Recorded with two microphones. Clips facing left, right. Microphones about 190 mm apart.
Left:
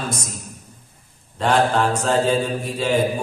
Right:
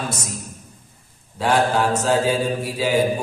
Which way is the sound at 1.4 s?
5° right (ahead or behind).